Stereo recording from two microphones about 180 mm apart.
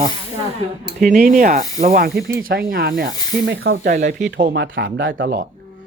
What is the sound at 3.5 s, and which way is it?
Speech, 90° right.